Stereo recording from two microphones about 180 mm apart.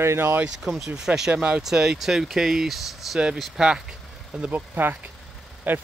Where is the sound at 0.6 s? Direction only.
Centre (ahead or behind).